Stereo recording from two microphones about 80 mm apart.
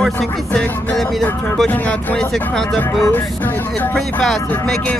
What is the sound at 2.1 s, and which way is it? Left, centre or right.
Speech, centre.